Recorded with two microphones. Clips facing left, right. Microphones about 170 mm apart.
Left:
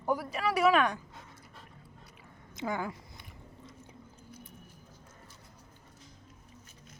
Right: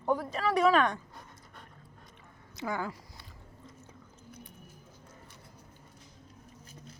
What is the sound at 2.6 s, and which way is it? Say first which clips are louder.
Speech: even; 20° left (ahead or behind).